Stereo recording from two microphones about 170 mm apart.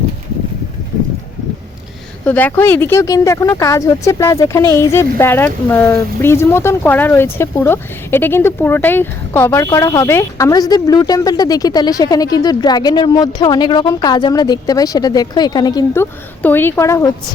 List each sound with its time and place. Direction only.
2.2 s speech: 10° left (ahead or behind)
16.4 s speech: 10° left (ahead or behind)